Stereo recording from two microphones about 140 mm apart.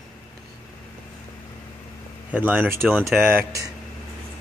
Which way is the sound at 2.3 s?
15° right (ahead or behind).